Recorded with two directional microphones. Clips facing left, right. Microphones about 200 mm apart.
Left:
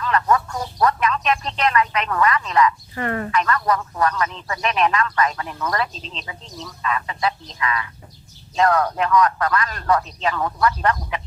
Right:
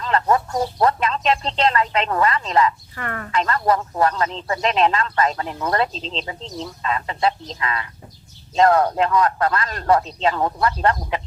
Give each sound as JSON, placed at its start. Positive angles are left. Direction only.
{"t": 0.0, "sound": "speech", "side_deg": -30}
{"t": 2.9, "sound": "speech", "side_deg": 25}
{"t": 3.3, "sound": "a man's voice", "side_deg": -30}